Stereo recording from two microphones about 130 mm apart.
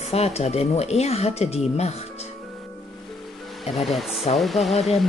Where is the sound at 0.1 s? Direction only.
55° left (ahead or behind).